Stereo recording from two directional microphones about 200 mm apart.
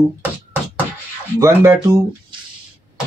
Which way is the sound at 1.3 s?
15° right (ahead or behind).